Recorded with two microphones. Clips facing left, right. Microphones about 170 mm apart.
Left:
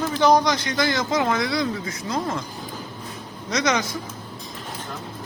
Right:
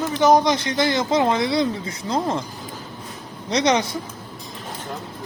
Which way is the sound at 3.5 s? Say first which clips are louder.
Right 4 dB; 30° right (ahead or behind).